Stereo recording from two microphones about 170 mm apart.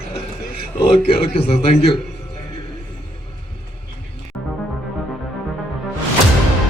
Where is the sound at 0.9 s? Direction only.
30° left (ahead or behind).